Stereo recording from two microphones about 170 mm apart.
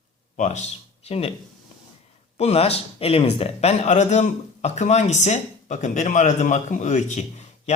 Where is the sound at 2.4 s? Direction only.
40° left (ahead or behind).